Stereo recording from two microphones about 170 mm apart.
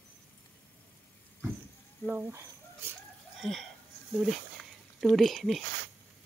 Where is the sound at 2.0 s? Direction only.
5° right (ahead or behind).